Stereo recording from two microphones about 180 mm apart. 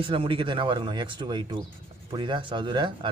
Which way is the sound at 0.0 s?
30° right (ahead or behind).